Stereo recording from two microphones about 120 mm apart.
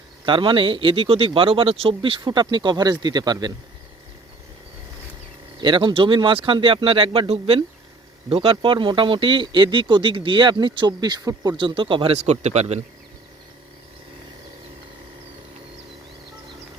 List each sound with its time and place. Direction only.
0.3 s speech: 45° right (ahead or behind)
5.5 s speech: 40° right (ahead or behind)
12.1 s a man's voice: 65° right (ahead or behind)